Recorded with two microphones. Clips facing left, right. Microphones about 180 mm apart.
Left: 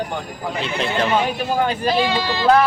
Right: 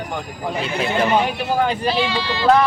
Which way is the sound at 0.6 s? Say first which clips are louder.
Right 1 dB; 10° right (ahead or behind).